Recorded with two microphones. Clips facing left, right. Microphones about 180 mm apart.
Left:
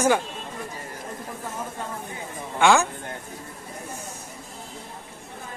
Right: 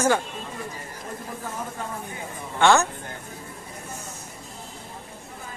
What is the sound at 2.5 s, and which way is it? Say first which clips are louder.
Speech: even; 10° left (ahead or behind).